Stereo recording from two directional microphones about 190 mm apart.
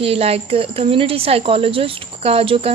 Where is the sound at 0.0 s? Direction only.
30° right (ahead or behind).